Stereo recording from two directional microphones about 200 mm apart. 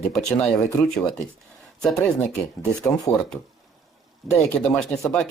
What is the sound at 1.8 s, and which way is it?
Speech, 5° left (ahead or behind).